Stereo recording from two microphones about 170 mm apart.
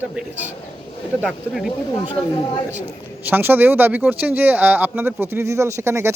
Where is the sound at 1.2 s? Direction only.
5° right (ahead or behind).